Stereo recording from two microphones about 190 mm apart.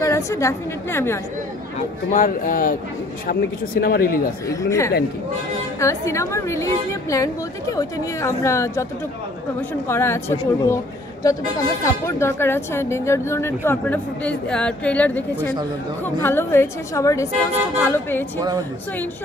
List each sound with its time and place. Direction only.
0.0 s speech: 15° left (ahead or behind)
2.1 s speech: 45° left (ahead or behind)
4.5 s speech: 15° left (ahead or behind)
11.8 s speech: 15° left (ahead or behind)